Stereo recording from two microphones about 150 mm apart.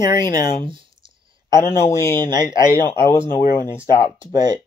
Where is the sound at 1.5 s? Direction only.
20° left (ahead or behind).